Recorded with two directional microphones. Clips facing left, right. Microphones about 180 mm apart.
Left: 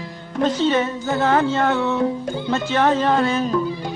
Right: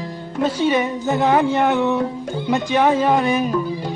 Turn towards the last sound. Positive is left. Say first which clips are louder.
# right 2 dB
turn(degrees=-15)  # may be behind; listen again after turning